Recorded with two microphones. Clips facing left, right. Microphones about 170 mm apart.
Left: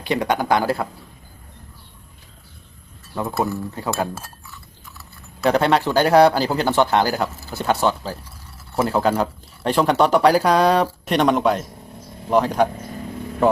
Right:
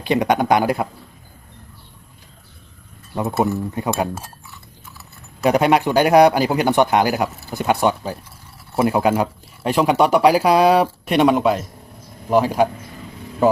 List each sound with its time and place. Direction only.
0.0 s speech: 20° right (ahead or behind)
3.2 s speech: 20° right (ahead or behind)
5.4 s speech: 10° right (ahead or behind)